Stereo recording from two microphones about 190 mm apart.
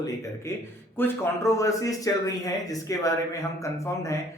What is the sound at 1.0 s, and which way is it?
Speech, 15° left (ahead or behind).